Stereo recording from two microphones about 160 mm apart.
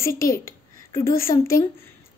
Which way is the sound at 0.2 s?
65° left (ahead or behind).